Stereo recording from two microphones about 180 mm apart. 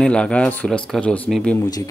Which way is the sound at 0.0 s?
5° left (ahead or behind).